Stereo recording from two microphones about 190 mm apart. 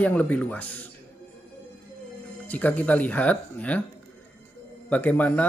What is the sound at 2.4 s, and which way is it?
Speech, 10° left (ahead or behind).